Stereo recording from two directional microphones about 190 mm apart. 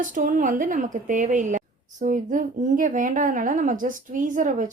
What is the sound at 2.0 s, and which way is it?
Speech, 40° right (ahead or behind).